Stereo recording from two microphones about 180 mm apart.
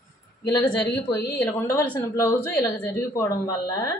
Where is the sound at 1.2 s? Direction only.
60° left (ahead or behind).